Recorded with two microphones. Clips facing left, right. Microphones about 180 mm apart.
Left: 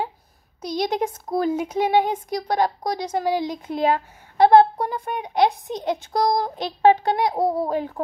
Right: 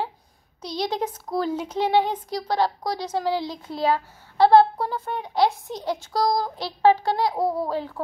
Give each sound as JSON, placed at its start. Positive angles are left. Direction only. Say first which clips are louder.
{"t": 0.6, "sound": "a woman's voice", "louder": "left 3 dB", "side_deg": 15}